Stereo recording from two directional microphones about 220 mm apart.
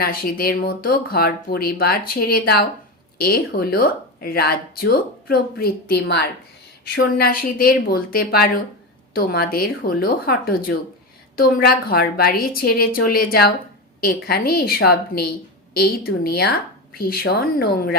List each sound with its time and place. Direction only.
0.0 s speech: 45° left (ahead or behind)